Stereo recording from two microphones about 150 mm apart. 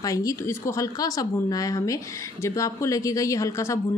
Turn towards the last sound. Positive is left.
turn(degrees=20)  # may be behind; listen again after turning